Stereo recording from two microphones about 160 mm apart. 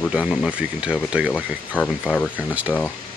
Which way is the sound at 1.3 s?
10° left (ahead or behind).